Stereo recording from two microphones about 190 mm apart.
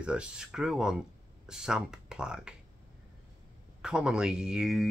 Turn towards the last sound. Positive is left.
turn(degrees=-5)  # may be behind; listen again after turning